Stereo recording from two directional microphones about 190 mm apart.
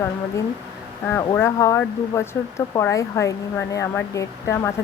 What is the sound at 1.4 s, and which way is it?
Speech, 15° left (ahead or behind).